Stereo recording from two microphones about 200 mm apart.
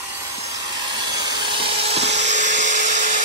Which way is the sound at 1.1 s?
20° right (ahead or behind).